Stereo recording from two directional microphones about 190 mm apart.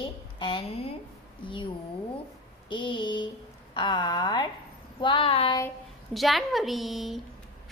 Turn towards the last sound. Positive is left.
turn(degrees=0)  # may be behind; listen again after turning